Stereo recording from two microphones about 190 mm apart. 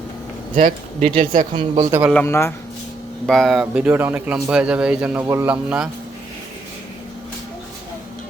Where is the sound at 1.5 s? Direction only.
25° right (ahead or behind).